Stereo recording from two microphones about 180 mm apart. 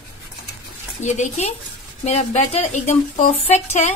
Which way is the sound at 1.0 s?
40° left (ahead or behind).